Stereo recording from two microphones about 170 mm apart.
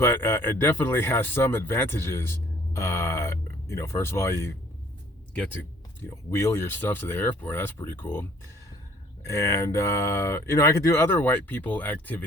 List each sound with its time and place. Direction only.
0.0 s speech: 15° left (ahead or behind)
6.3 s speech: 15° left (ahead or behind)